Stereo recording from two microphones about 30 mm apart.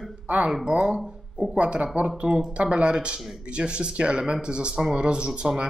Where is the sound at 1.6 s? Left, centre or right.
Right.